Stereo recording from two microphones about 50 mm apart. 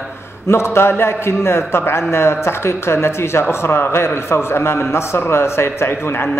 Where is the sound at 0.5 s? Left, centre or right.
Left.